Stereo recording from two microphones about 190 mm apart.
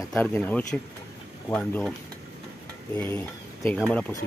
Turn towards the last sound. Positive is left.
turn(degrees=5)  # may be behind; listen again after turning